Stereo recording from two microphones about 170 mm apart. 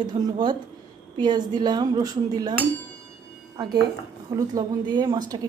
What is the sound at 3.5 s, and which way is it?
Speech, 25° right (ahead or behind).